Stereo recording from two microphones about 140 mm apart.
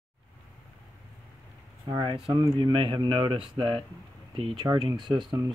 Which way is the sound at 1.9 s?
30° right (ahead or behind).